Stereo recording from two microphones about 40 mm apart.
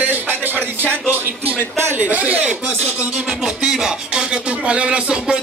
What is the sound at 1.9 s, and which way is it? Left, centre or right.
Speech, right.